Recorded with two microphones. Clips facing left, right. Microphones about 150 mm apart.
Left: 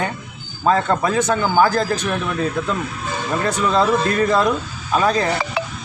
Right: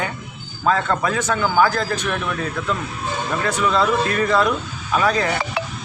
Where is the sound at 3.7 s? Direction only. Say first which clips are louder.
Left 4 dB; 30° left (ahead or behind).